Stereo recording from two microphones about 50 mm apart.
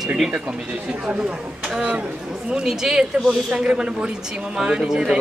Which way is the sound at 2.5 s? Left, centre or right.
Centre.